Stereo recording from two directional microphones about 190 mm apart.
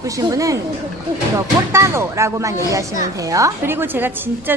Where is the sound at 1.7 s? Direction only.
15° right (ahead or behind).